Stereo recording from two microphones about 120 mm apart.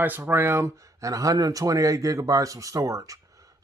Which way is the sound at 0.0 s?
15° right (ahead or behind).